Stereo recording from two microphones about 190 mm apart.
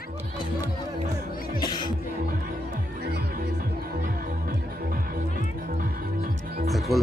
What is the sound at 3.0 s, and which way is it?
Music, 60° right (ahead or behind).